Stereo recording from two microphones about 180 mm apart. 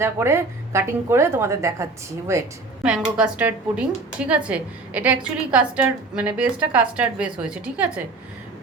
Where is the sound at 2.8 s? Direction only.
5° right (ahead or behind).